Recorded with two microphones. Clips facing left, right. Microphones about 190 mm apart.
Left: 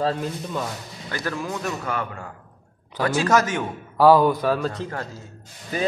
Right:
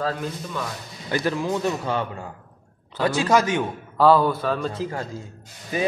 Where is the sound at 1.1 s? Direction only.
20° right (ahead or behind).